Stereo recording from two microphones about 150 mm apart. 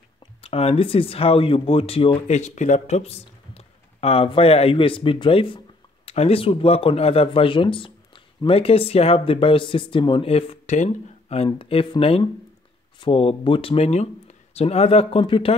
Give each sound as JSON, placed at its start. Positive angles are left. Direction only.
{"t": 0.4, "sound": "speech", "side_deg": 40}